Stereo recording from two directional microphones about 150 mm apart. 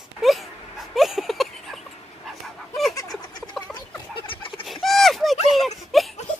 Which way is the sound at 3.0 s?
25° left (ahead or behind).